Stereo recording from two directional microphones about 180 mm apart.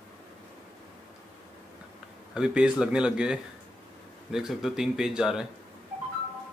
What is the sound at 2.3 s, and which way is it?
Speech, 5° right (ahead or behind).